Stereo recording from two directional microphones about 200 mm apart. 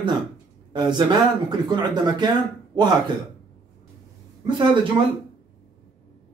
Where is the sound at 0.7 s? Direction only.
20° right (ahead or behind).